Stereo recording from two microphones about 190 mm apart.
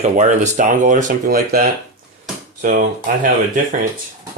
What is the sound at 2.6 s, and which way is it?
Speech, 45° right (ahead or behind).